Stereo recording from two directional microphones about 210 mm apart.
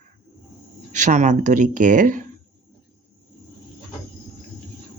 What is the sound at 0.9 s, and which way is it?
Speech, 35° right (ahead or behind).